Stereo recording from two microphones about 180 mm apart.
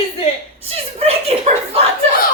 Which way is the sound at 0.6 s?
35° right (ahead or behind).